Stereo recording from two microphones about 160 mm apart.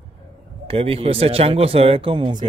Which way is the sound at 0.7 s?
35° right (ahead or behind).